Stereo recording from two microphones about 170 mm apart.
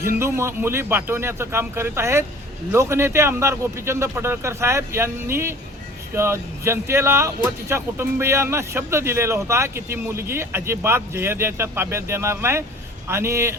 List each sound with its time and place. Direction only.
0.2 s speech: 15° right (ahead or behind)